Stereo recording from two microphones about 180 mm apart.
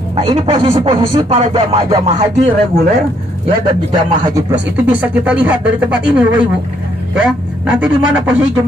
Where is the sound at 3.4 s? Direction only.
25° right (ahead or behind); by 7.9 s 5° right (ahead or behind).